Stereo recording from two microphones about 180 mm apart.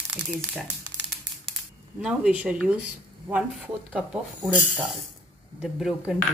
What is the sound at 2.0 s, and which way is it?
Speech, 5° right (ahead or behind).